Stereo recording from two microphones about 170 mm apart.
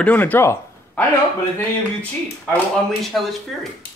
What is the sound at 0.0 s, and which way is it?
Speech, 10° left (ahead or behind).